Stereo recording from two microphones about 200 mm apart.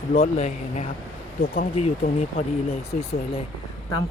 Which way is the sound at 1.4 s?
50° left (ahead or behind).